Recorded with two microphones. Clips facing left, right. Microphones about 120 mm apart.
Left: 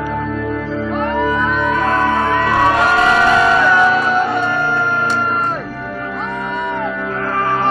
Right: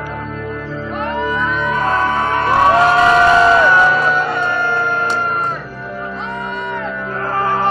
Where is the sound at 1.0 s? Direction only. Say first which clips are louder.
Left 1 dB; 45° left (ahead or behind).